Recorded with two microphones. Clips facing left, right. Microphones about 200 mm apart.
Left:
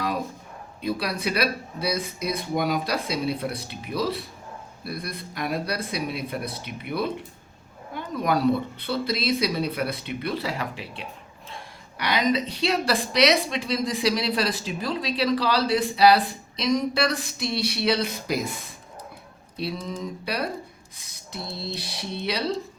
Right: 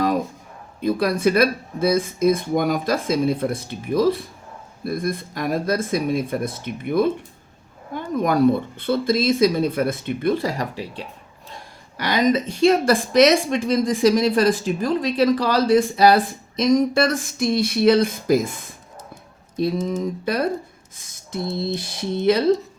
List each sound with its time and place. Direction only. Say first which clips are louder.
0.8 s a woman's voice: right 8 dB; 50° right (ahead or behind)
19.5 s a woman's voice: right 9 dB; 45° right (ahead or behind)
20.9 s a sound: right 9 dB; 50° right (ahead or behind)
21.8 s a woman's voice: right 7 dB; 50° right (ahead or behind)